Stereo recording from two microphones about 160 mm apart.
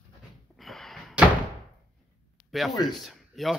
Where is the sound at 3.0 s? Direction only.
Centre (ahead or behind).